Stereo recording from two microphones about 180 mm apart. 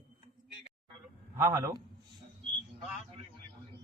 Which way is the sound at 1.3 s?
15° right (ahead or behind).